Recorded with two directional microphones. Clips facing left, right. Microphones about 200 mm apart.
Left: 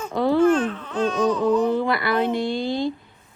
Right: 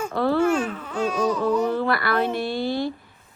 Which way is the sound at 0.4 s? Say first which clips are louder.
Left 4 dB; 10° right (ahead or behind).